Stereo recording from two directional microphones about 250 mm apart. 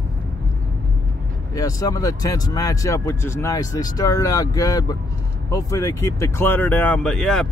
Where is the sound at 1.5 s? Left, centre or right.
Centre.